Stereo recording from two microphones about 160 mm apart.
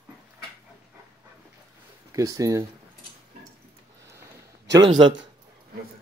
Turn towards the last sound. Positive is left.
turn(degrees=-30)  # may be behind; listen again after turning